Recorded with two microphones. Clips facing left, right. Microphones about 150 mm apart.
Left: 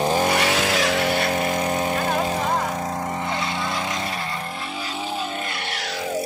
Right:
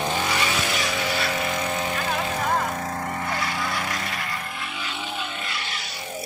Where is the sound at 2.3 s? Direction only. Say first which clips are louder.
Left 2 dB; 15° left (ahead or behind).